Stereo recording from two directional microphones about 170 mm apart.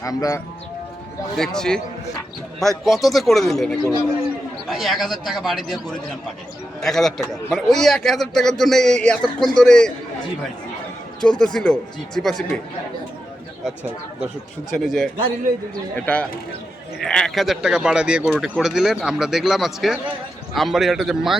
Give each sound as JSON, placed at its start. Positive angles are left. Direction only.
{"t": 0.0, "sound": "speech", "side_deg": 20}
{"t": 1.4, "sound": "a man's voice", "side_deg": 5}
{"t": 11.2, "sound": "a man's voice", "side_deg": 5}
{"t": 14.8, "sound": "a man's voice", "side_deg": 0}